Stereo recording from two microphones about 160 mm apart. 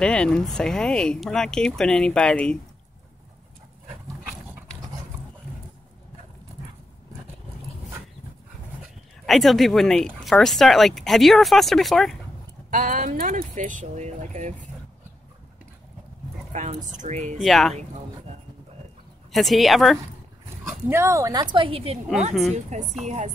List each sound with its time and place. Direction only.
0.0 s speech: 5° left (ahead or behind)
9.2 s speech: centre (ahead or behind)
12.7 s speech: 55° right (ahead or behind)
16.5 s speech: 50° right (ahead or behind)
17.4 s speech: centre (ahead or behind)
19.3 s speech: centre (ahead or behind)
20.9 s a woman's voice: 15° right (ahead or behind); by 23.3 s 45° right (ahead or behind)